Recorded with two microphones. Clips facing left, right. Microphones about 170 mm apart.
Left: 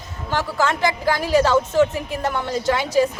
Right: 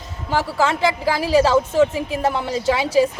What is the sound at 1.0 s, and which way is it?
Speech, 5° right (ahead or behind).